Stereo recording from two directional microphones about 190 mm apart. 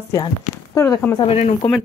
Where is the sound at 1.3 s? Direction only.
30° left (ahead or behind).